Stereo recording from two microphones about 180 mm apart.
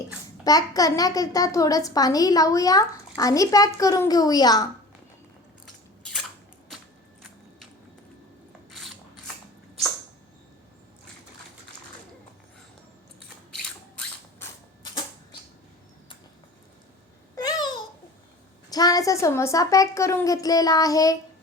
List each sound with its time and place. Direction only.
0.4 s a woman's voice: 20° left (ahead or behind)
8.7 s filing: centre (ahead or behind)
13.5 s a sound: 5° left (ahead or behind)
17.3 s babbling: 20° left (ahead or behind)
18.7 s a child's voice: 20° left (ahead or behind)